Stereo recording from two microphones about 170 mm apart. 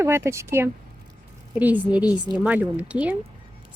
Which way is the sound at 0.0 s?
15° right (ahead or behind).